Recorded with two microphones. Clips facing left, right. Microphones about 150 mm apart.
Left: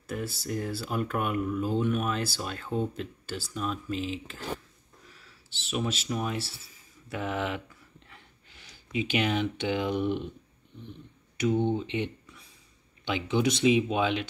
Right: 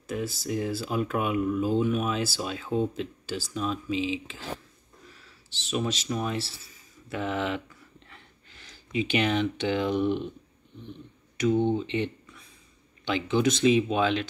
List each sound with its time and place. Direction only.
0.1 s speech: centre (ahead or behind)
3.9 s speech: 90° right
5.7 s speech: 5° left (ahead or behind)
11.3 s speech: 10° left (ahead or behind)